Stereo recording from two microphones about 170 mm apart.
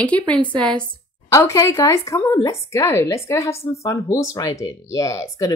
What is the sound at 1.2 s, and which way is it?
A woman's voice, 15° left (ahead or behind).